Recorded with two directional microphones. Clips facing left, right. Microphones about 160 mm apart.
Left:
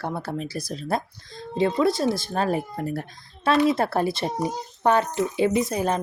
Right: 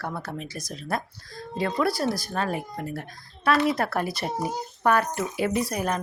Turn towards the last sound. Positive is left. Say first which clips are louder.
# left 3 dB
turn(degrees=25)  # may be behind; listen again after turning